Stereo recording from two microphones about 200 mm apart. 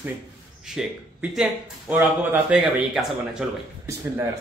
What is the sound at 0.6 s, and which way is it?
Speech, centre (ahead or behind).